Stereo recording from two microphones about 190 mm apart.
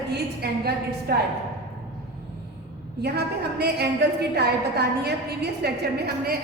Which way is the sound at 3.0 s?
60° right (ahead or behind).